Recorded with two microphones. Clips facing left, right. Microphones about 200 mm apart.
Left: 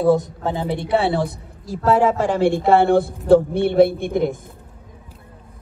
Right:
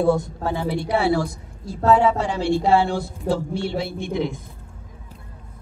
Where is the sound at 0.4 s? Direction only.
20° left (ahead or behind).